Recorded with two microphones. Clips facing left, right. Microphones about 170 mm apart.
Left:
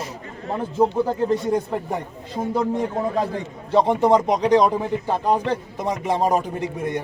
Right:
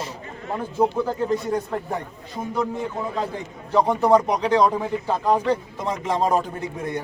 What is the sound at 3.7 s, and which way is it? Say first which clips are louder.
A man's voice: left 1 dB; 25° left (ahead or behind).